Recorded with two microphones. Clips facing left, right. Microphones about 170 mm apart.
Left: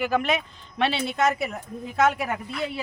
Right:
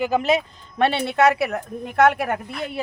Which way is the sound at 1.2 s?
70° right (ahead or behind).